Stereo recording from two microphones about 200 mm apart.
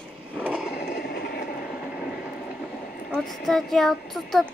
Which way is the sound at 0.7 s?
55° left (ahead or behind).